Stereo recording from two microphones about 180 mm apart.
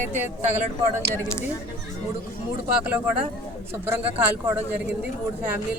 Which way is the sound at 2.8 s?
10° right (ahead or behind).